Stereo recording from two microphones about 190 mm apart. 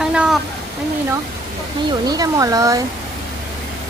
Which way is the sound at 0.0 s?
5° right (ahead or behind).